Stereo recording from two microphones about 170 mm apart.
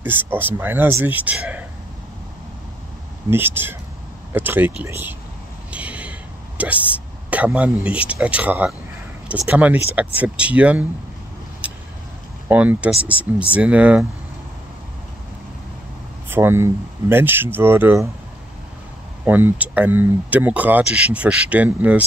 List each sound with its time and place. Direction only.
0.0 s speech: 10° right (ahead or behind)
3.3 s speech: 10° right (ahead or behind)
5.7 s a sound: 10° right (ahead or behind)
6.6 s speech: 10° right (ahead or behind)
11.6 s vehicle: 5° right (ahead or behind)
12.4 s speech: 10° right (ahead or behind)
16.3 s speech: 15° right (ahead or behind)
19.2 s speech: 10° right (ahead or behind)